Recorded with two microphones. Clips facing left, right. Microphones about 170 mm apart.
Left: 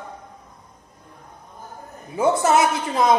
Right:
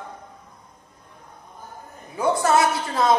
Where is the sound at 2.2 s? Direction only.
20° left (ahead or behind).